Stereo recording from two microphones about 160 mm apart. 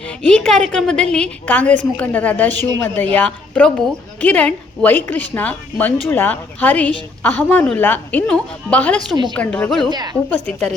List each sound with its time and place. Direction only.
0.2 s a woman's voice: 5° left (ahead or behind)
9.9 s a woman's voice: 25° right (ahead or behind)
10.2 s a woman's voice: 10° left (ahead or behind)